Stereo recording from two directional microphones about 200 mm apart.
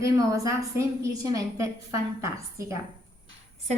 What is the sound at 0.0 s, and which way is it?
A woman's voice, 15° right (ahead or behind).